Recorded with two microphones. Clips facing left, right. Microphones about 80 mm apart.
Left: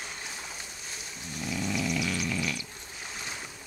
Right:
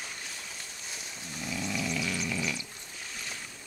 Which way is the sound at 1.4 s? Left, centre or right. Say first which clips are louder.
Left 3 dB; centre.